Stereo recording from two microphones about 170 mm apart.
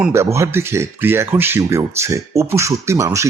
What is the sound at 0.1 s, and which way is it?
Speech, 15° right (ahead or behind).